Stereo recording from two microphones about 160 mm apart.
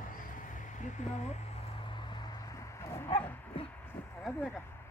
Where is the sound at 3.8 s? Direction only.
10° left (ahead or behind).